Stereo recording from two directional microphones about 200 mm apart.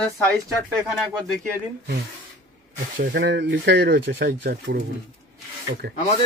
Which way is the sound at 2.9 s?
55° right (ahead or behind).